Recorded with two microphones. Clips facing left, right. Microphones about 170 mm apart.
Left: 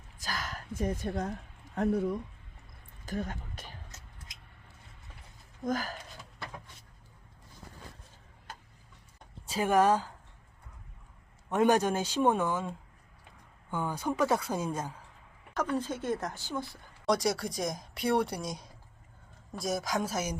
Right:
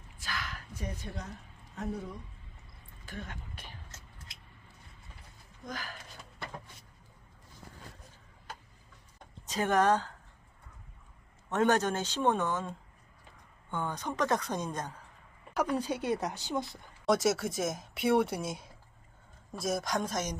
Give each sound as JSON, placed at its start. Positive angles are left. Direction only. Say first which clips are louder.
{"t": 0.2, "sound": "speech", "louder": "left 2 dB", "side_deg": 40}
{"t": 3.1, "sound": "speech", "louder": "left 8 dB", "side_deg": 40}
{"t": 5.6, "sound": "speech", "louder": "left 9 dB", "side_deg": 40}
{"t": 9.5, "sound": "a woman's voice", "louder": "left 2 dB", "side_deg": 10}
{"t": 11.4, "sound": "a woman's voice", "louder": "left 2 dB", "side_deg": 10}
{"t": 15.5, "sound": "a woman's voice", "louder": "right 1 dB", "side_deg": -15}
{"t": 17.1, "sound": "speech", "louder": "right 1 dB", "side_deg": 0}